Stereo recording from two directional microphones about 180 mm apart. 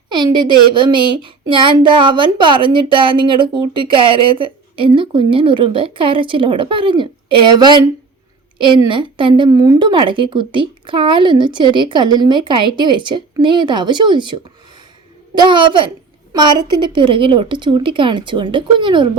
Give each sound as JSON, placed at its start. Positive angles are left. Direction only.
{"t": 0.1, "sound": "speech", "side_deg": -25}
{"t": 15.4, "sound": "speech", "side_deg": -25}